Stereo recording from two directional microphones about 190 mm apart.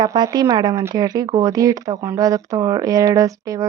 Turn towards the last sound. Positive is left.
turn(degrees=-15)  # may be behind; listen again after turning